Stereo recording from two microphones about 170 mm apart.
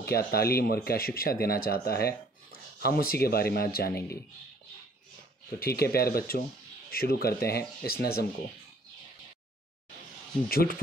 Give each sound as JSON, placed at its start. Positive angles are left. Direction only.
{"t": 0.0, "sound": "speech", "side_deg": 65}
{"t": 5.6, "sound": "speech", "side_deg": 65}
{"t": 10.5, "sound": "speech", "side_deg": 60}